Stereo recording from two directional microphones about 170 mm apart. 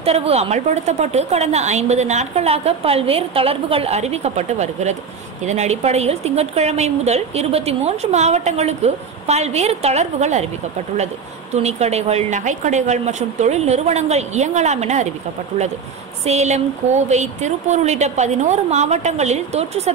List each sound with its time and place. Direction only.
0.0 s a woman's voice: 35° right (ahead or behind)
11.5 s a woman's voice: 40° right (ahead or behind)
16.3 s a woman's voice: 40° right (ahead or behind)